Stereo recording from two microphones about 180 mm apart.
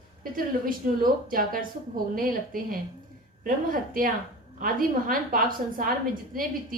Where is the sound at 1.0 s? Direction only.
50° right (ahead or behind).